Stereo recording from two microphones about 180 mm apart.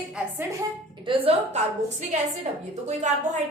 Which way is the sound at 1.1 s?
30° right (ahead or behind).